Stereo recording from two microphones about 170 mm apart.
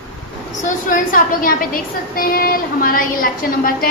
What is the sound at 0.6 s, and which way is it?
A woman's voice, 50° left (ahead or behind).